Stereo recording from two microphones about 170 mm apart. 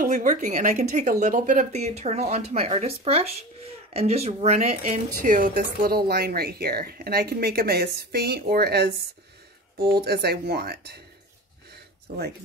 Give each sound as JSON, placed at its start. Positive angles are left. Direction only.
{"t": 0.0, "sound": "speech", "side_deg": -50}